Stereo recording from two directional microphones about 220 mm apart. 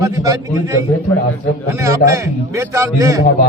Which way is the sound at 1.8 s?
15° right (ahead or behind).